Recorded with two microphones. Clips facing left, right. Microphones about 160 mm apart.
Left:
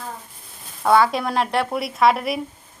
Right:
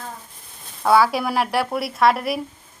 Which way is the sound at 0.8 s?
5° right (ahead or behind).